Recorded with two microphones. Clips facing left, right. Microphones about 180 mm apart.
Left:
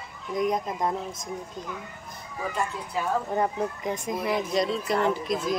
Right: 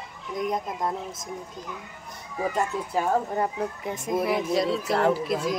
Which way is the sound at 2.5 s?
45° right (ahead or behind).